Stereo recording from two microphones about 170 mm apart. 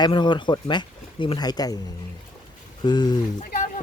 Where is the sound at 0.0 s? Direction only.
25° left (ahead or behind).